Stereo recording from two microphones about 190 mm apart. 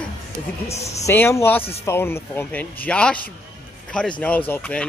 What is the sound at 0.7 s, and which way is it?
Speech, 35° left (ahead or behind).